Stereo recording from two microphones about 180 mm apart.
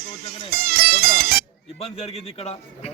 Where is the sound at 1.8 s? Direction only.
35° left (ahead or behind).